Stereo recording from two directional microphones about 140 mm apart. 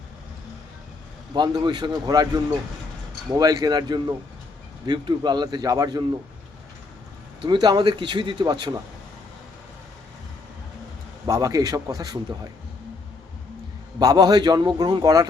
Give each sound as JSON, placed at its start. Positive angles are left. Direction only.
{"t": 1.3, "sound": "a man's voice", "side_deg": -30}
{"t": 7.4, "sound": "a man's voice", "side_deg": -35}
{"t": 11.3, "sound": "a man's voice", "side_deg": -25}
{"t": 14.0, "sound": "a man's voice", "side_deg": -25}